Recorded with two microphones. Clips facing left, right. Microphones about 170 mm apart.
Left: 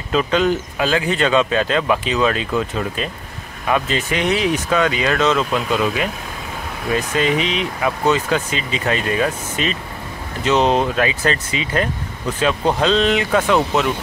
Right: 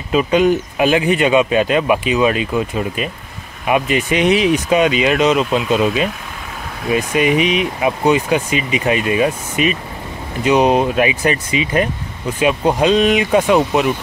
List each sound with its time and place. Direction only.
0.1 s speech: 10° right (ahead or behind)